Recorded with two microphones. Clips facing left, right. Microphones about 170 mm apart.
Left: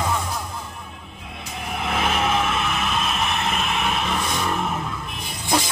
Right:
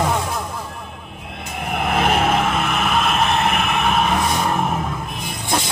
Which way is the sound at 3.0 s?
65° right (ahead or behind).